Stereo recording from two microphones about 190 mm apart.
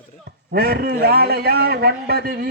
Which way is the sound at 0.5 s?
55° right (ahead or behind).